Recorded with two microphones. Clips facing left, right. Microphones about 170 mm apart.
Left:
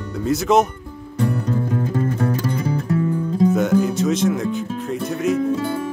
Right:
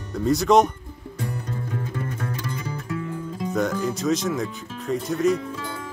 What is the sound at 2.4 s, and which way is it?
Music, 35° left (ahead or behind).